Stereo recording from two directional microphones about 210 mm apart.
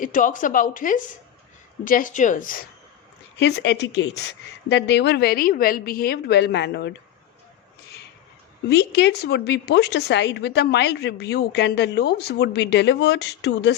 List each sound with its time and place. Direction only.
0.0 s a woman's voice: 40° left (ahead or behind)
3.4 s a woman's voice: 55° left (ahead or behind)
8.7 s a woman's voice: 55° left (ahead or behind)